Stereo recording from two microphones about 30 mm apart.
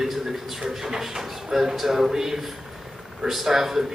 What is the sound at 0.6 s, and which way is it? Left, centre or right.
Speech, centre.